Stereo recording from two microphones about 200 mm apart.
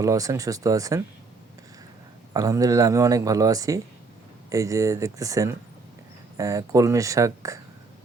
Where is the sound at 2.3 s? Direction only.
15° right (ahead or behind).